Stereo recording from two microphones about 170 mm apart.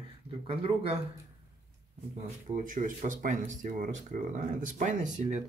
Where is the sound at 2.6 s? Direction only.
50° right (ahead or behind).